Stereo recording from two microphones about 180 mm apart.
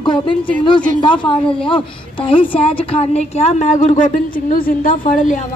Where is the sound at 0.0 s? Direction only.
25° left (ahead or behind).